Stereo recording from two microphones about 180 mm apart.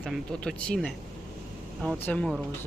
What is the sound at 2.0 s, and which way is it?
Speech, 5° left (ahead or behind).